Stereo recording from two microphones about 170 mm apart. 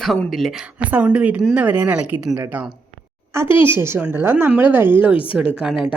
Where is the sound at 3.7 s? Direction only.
15° right (ahead or behind).